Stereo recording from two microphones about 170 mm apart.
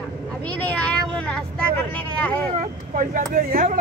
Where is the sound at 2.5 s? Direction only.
50° right (ahead or behind).